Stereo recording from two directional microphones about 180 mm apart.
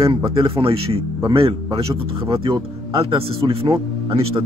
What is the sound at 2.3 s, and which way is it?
Speech, 30° right (ahead or behind).